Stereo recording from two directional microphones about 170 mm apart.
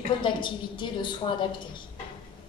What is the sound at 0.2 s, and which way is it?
A woman's voice, 30° left (ahead or behind).